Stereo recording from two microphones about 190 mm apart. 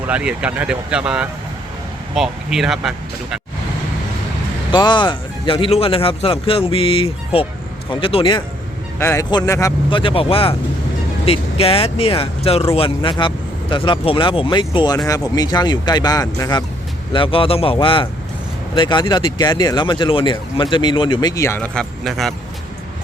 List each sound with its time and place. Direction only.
0.1 s speech: 5° right (ahead or behind)
4.7 s speech: 25° left (ahead or behind)
9.0 s speech: 15° left (ahead or behind)
9.9 s speech: 25° left (ahead or behind); by 22.4 s centre (ahead or behind)